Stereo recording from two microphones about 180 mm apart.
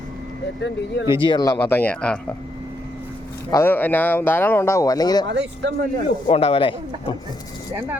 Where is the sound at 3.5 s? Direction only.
15° left (ahead or behind).